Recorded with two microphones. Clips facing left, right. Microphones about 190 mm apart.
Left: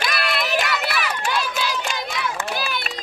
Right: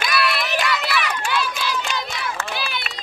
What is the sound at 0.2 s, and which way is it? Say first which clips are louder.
Run: left 2 dB; 50° left (ahead or behind).